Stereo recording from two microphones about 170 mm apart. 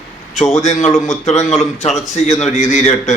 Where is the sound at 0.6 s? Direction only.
40° left (ahead or behind).